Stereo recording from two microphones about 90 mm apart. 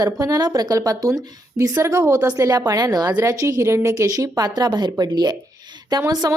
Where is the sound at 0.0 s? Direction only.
45° right (ahead or behind).